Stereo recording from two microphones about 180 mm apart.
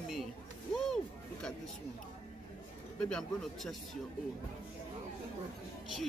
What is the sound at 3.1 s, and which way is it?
Speech, centre (ahead or behind).